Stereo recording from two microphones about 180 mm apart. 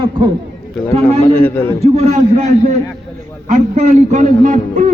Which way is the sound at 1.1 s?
10° left (ahead or behind).